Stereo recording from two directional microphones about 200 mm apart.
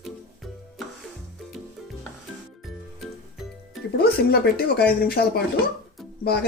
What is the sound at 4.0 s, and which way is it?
Speech, 50° left (ahead or behind).